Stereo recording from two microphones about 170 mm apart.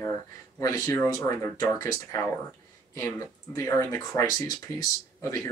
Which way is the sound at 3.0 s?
20° left (ahead or behind).